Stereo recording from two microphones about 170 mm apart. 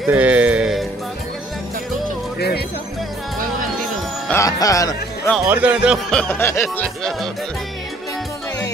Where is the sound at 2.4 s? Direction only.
70° left (ahead or behind).